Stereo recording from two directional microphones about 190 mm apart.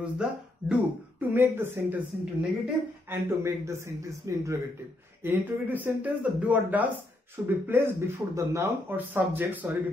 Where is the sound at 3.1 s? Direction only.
15° right (ahead or behind).